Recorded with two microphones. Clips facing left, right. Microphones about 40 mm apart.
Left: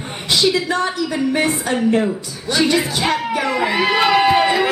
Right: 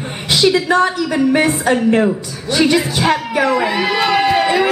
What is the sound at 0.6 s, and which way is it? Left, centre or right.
Speech, right.